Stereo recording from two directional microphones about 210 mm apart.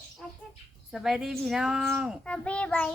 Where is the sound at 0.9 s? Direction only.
Centre (ahead or behind).